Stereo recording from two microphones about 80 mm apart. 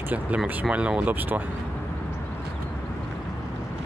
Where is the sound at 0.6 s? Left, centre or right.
Centre.